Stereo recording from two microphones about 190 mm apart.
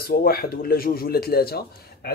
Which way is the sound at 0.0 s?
55° left (ahead or behind).